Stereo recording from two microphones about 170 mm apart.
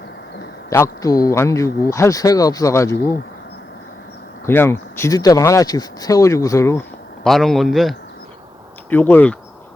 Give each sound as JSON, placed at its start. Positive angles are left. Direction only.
{"t": 0.7, "sound": "a man's voice", "side_deg": 20}
{"t": 4.4, "sound": "speech", "side_deg": 15}
{"t": 7.3, "sound": "a man's voice", "side_deg": 0}